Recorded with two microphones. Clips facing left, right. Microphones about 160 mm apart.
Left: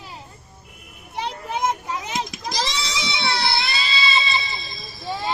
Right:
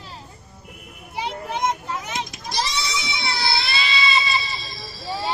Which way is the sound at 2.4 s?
90° left.